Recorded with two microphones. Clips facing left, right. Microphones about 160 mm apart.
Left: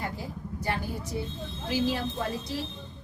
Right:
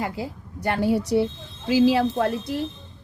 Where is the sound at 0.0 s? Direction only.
75° right (ahead or behind).